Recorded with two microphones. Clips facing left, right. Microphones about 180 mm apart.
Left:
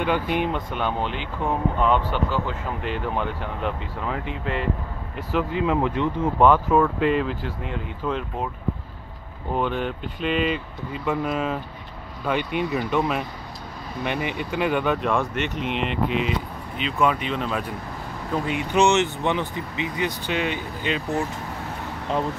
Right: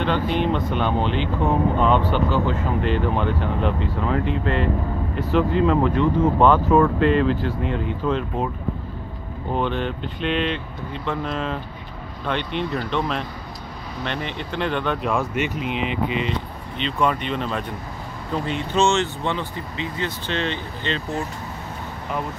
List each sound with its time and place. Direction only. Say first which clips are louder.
0.0 s speech: right 1 dB; 10° left (ahead or behind)
9.5 s speech: right 1 dB; 5° left (ahead or behind)